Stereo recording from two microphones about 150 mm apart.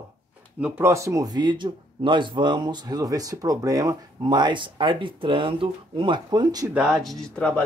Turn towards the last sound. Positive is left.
turn(degrees=5)  # may be behind; listen again after turning